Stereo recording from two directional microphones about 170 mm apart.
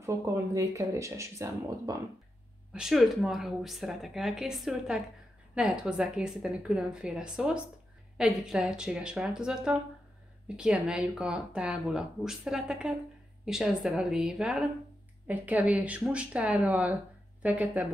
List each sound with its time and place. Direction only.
0.6 s speech: 20° right (ahead or behind)
2.7 s speech: centre (ahead or behind)